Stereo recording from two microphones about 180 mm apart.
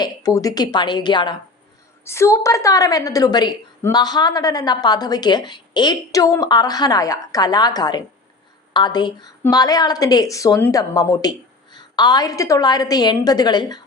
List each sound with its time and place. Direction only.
0.0 s a woman's voice: 20° left (ahead or behind)
2.0 s a woman's voice: 15° left (ahead or behind)